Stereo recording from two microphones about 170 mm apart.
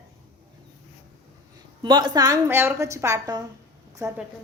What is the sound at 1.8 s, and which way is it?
A woman's voice, 25° right (ahead or behind).